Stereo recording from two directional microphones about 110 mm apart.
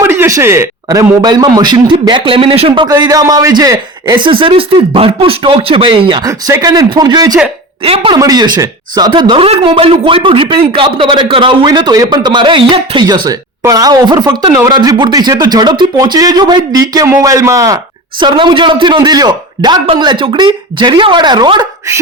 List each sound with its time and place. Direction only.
0.0 s a sound: 20° right (ahead or behind)
0.3 s speech: 25° right (ahead or behind)
0.9 s speech: 35° right (ahead or behind); by 2.8 s 55° right (ahead or behind)
2.8 s speech: 40° right (ahead or behind)
6.2 s speech: 30° right (ahead or behind)
7.9 s speech: 60° right (ahead or behind)
8.1 s speech: 35° right (ahead or behind)
18.2 s speech: 45° right (ahead or behind)